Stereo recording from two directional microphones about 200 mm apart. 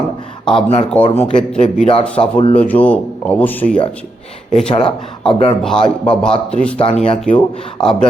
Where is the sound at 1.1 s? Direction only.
10° left (ahead or behind).